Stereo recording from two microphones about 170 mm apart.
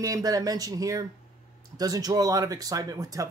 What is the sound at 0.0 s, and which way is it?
Speech, 20° right (ahead or behind).